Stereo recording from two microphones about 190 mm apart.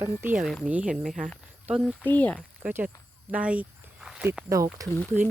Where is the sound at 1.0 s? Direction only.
40° right (ahead or behind).